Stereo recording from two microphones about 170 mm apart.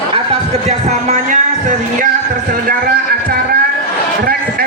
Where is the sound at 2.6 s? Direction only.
55° right (ahead or behind).